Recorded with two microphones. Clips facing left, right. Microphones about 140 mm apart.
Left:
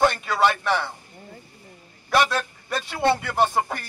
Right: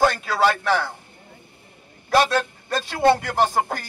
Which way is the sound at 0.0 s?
Centre (ahead or behind).